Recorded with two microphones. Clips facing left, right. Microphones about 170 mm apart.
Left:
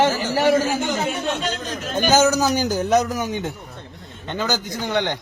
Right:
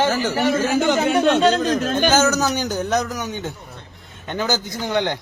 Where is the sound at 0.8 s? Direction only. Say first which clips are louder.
Right 7 dB; 80° right.